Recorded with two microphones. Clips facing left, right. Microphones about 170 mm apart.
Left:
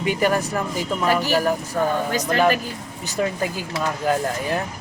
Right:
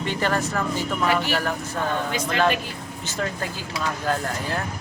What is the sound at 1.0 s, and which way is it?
Speech, 40° left (ahead or behind).